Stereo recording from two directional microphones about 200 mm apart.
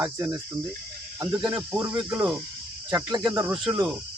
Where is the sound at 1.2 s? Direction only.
20° right (ahead or behind).